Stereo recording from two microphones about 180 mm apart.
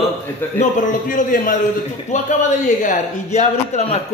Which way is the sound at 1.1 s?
50° left (ahead or behind).